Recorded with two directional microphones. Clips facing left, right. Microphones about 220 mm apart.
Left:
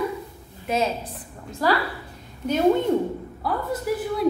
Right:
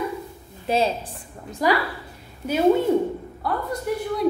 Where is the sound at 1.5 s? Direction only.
15° right (ahead or behind).